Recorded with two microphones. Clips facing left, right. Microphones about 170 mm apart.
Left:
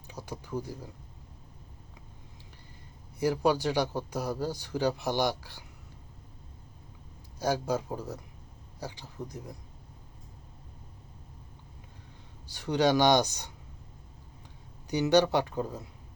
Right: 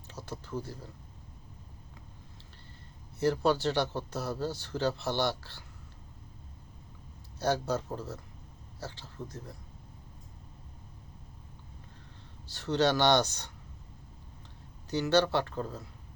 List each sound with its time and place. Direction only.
0.1 s speech: 15° left (ahead or behind)
3.2 s speech: 10° left (ahead or behind)
7.3 s speech: 10° left (ahead or behind)
12.5 s speech: 15° left (ahead or behind)
14.8 s speech: 15° left (ahead or behind)